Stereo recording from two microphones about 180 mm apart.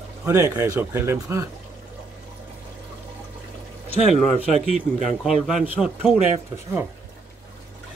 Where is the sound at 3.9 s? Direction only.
35° right (ahead or behind).